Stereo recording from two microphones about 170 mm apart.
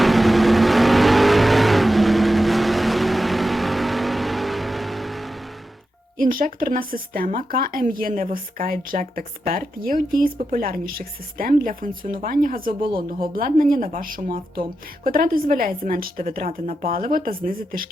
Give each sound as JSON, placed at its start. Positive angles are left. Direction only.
{"t": 0.0, "sound": "vehicle", "side_deg": 0}
{"t": 6.1, "sound": "speech", "side_deg": -55}